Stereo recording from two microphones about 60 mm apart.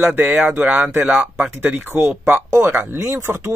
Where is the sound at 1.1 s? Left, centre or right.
Centre.